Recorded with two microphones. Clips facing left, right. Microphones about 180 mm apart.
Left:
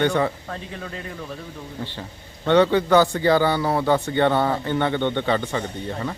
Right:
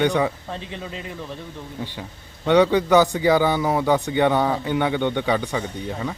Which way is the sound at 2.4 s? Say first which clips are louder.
Even; 15° right (ahead or behind).